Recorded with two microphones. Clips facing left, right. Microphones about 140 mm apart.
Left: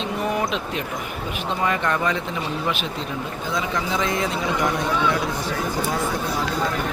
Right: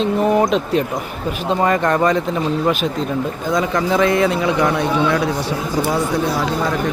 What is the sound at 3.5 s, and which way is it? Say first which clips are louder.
A man's voice: right 7 dB; 50° right (ahead or behind).